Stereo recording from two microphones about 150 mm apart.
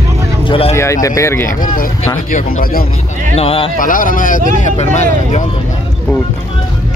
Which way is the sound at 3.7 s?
65° left (ahead or behind).